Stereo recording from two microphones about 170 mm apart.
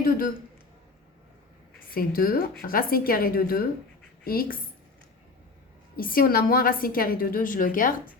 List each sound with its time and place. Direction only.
1.9 s a woman's voice: 60° left (ahead or behind)
6.0 s a woman's voice: 55° left (ahead or behind)